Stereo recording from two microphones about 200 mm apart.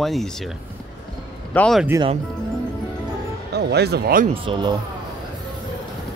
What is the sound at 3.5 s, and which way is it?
Speech, 55° right (ahead or behind).